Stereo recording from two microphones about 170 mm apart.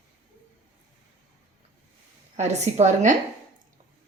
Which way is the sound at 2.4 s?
40° right (ahead or behind).